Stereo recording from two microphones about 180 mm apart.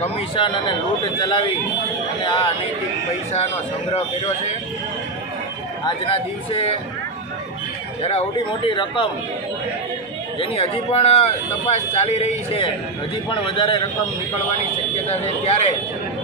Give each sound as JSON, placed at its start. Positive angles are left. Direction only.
{"t": 0.0, "sound": "speech", "side_deg": 25}
{"t": 5.9, "sound": "speech", "side_deg": 30}
{"t": 8.0, "sound": "speech", "side_deg": 35}
{"t": 10.4, "sound": "speech", "side_deg": 30}
{"t": 15.0, "sound": "speech", "side_deg": 35}